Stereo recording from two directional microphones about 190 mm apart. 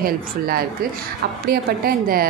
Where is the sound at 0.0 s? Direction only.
50° right (ahead or behind).